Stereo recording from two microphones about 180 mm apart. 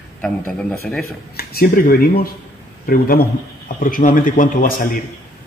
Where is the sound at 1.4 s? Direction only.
55° left (ahead or behind).